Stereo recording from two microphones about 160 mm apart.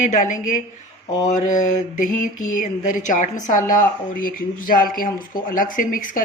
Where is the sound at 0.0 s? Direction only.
50° left (ahead or behind).